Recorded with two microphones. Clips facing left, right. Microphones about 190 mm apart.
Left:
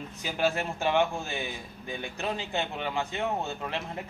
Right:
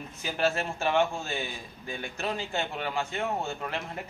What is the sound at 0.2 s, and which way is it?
A man's voice, 15° left (ahead or behind).